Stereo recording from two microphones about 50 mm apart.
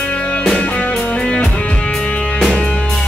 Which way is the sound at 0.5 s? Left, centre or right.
Left.